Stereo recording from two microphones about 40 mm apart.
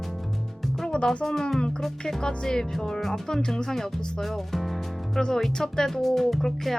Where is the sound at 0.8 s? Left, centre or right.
Left.